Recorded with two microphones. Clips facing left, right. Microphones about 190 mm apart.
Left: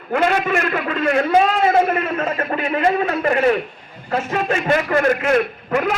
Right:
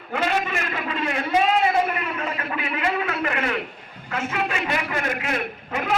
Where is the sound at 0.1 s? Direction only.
50° left (ahead or behind).